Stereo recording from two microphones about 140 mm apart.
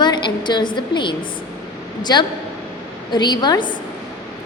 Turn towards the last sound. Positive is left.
turn(degrees=35)  # may be behind; listen again after turning